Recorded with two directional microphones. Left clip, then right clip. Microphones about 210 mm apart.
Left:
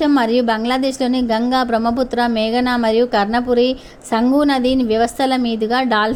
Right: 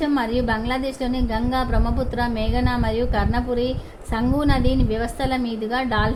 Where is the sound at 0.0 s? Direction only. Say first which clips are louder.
Left 7 dB; 25° left (ahead or behind).